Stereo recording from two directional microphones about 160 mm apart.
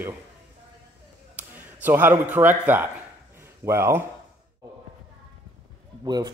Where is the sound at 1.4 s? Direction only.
10° right (ahead or behind).